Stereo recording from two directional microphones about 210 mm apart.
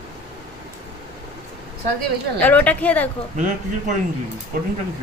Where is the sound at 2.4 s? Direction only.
10° left (ahead or behind).